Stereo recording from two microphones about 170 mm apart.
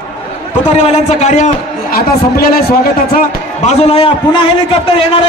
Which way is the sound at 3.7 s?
35° left (ahead or behind).